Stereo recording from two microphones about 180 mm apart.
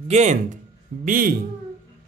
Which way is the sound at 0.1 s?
40° right (ahead or behind).